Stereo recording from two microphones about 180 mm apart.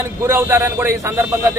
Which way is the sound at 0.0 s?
15° right (ahead or behind).